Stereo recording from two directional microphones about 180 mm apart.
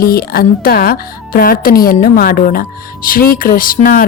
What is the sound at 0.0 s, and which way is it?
A woman's voice, 55° left (ahead or behind).